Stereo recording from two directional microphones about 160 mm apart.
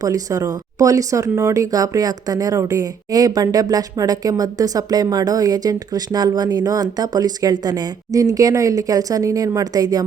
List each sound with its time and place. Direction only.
0.0 s speech: 20° right (ahead or behind)